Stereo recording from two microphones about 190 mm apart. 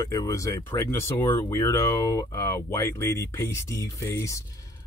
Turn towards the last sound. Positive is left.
turn(degrees=15)  # may be behind; listen again after turning